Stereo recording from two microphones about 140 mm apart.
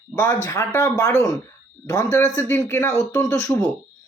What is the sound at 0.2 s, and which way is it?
Speech, 15° left (ahead or behind).